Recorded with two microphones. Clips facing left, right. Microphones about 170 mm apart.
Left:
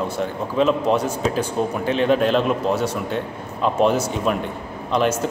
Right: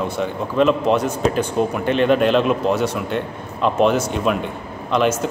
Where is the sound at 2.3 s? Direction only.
10° left (ahead or behind).